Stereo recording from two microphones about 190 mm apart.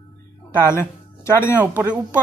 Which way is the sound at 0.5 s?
15° left (ahead or behind).